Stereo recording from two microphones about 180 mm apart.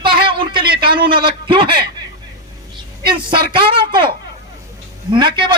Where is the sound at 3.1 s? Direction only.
25° right (ahead or behind).